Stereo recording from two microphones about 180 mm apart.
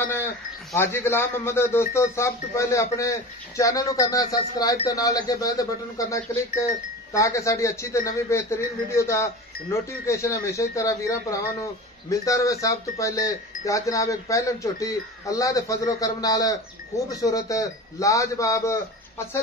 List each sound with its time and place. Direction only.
0.7 s a man's voice: 15° left (ahead or behind)